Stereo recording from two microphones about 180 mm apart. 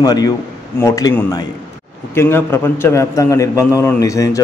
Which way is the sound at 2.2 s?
15° left (ahead or behind).